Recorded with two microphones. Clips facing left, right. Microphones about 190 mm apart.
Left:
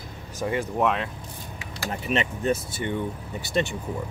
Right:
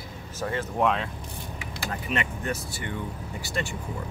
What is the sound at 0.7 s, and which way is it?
Speech, centre (ahead or behind).